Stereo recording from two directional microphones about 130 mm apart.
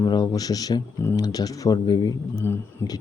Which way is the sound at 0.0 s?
30° left (ahead or behind).